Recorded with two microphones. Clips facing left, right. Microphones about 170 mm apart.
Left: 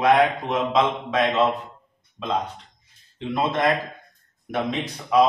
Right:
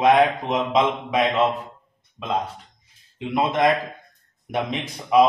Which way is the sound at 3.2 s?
15° right (ahead or behind).